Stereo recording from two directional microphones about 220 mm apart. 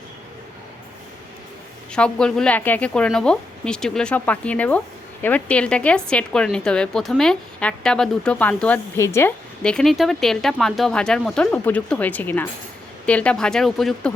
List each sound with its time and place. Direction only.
1.9 s speech: 5° left (ahead or behind)